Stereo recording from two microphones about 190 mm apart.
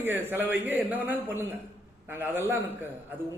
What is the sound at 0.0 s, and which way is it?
A man's voice, 10° right (ahead or behind).